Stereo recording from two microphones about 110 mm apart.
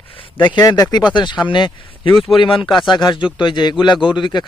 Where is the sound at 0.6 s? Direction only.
35° left (ahead or behind).